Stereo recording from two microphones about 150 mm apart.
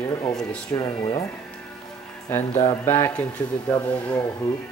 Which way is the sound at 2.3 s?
15° left (ahead or behind).